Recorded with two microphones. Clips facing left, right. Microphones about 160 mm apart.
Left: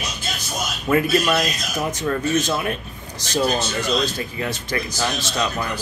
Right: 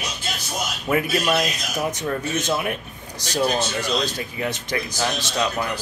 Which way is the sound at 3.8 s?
15° right (ahead or behind).